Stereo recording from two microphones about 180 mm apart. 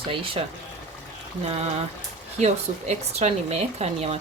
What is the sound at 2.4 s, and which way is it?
Speech, 35° right (ahead or behind).